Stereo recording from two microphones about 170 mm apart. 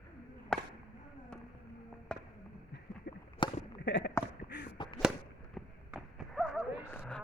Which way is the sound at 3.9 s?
90° left.